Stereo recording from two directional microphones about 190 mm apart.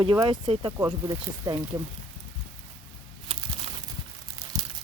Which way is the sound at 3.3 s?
30° right (ahead or behind).